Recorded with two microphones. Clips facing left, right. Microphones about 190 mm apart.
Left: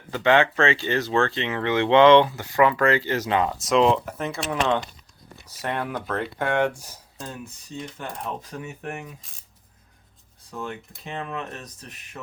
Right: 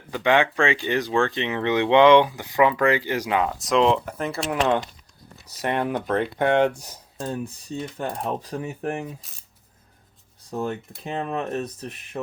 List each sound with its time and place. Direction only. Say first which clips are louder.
0.1 s speech: left 1 dB; 15° right (ahead or behind)
5.6 s speech: right 4 dB; 20° right (ahead or behind)
7.2 s speech: right 8 dB; 35° right (ahead or behind)
10.5 s speech: right 6 dB; 35° right (ahead or behind)